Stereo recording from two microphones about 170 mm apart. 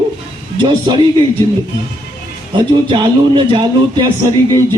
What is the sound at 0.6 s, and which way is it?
Speech, 30° right (ahead or behind).